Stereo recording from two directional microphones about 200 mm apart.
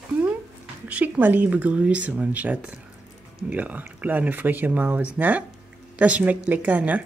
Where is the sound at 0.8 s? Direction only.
5° right (ahead or behind).